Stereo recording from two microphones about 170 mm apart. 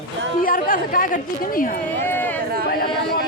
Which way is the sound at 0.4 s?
55° left (ahead or behind).